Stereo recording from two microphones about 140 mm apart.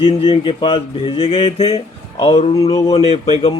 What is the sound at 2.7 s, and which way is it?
Speech, 25° left (ahead or behind).